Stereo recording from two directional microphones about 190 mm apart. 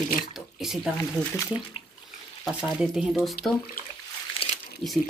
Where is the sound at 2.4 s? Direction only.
5° right (ahead or behind).